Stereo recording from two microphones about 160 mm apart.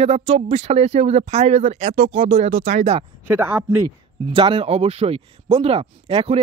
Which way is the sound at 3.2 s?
15° right (ahead or behind).